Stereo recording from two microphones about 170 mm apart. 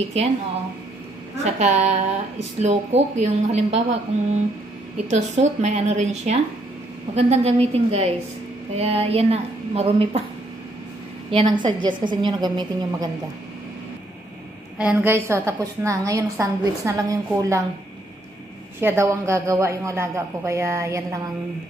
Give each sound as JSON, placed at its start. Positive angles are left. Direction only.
{"t": 0.2, "sound": "a woman's voice", "side_deg": -40}
{"t": 1.4, "sound": "a woman's voice", "side_deg": -40}
{"t": 5.1, "sound": "a woman's voice", "side_deg": -40}
{"t": 11.3, "sound": "a woman's voice", "side_deg": -25}
{"t": 14.8, "sound": "a woman's voice", "side_deg": -5}
{"t": 18.8, "sound": "a woman's voice", "side_deg": -15}